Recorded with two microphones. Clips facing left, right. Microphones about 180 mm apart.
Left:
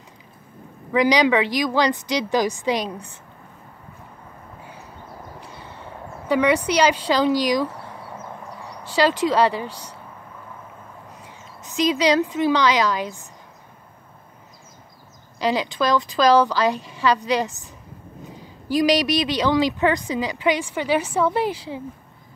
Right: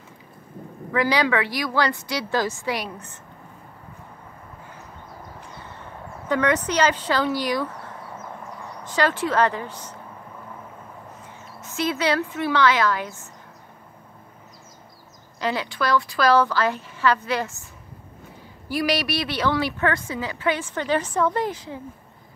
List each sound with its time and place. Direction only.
0.9 s speech: 15° left (ahead or behind)
6.2 s speech: 10° left (ahead or behind)
9.1 s speech: 15° left (ahead or behind)
11.6 s speech: 15° left (ahead or behind)
15.4 s speech: 15° left (ahead or behind)